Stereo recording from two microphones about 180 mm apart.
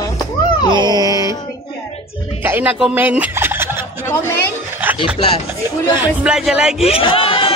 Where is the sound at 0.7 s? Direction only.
25° right (ahead or behind).